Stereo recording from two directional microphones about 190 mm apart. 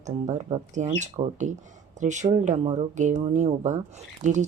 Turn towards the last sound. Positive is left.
turn(degrees=-40)  # may be behind; listen again after turning